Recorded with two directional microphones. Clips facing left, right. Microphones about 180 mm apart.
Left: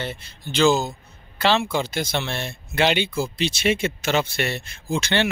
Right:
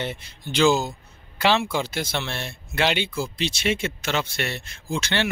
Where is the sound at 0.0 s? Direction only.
15° right (ahead or behind).